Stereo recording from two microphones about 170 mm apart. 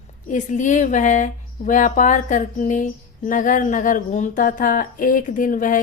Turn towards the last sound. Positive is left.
turn(degrees=50)  # may be behind; listen again after turning